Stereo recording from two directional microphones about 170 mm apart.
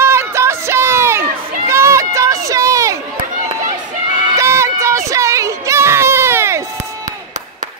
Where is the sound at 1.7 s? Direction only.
15° right (ahead or behind).